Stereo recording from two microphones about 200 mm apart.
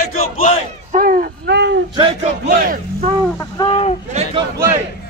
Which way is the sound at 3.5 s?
25° left (ahead or behind).